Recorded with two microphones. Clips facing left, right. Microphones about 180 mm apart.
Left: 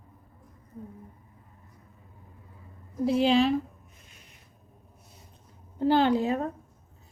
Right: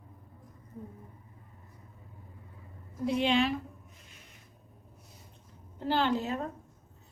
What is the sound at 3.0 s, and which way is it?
Speech, 35° left (ahead or behind).